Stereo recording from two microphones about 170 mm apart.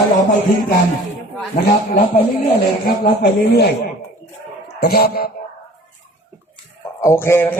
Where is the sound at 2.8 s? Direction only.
65° left (ahead or behind).